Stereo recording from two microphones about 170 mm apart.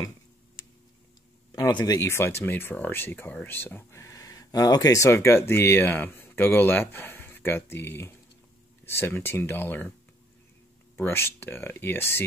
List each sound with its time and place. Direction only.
1.5 s speech: 25° left (ahead or behind)
11.0 s speech: 15° left (ahead or behind)